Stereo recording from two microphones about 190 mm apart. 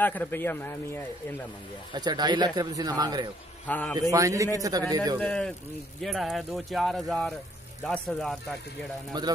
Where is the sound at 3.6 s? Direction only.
10° left (ahead or behind).